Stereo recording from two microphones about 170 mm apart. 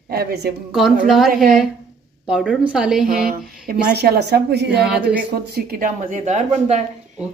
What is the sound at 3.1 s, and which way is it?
Speech, 60° right (ahead or behind).